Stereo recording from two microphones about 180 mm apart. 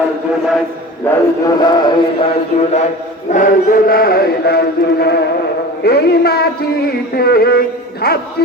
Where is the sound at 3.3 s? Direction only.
45° left (ahead or behind).